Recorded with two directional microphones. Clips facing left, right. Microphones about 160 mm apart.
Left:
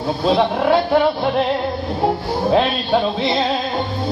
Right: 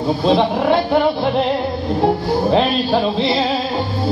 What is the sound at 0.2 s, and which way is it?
Speech, centre (ahead or behind).